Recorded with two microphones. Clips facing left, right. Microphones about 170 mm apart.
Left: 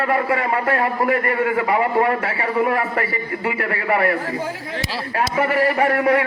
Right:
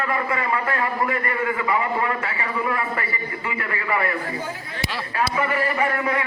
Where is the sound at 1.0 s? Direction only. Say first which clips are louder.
Left 5 dB; 55° left (ahead or behind).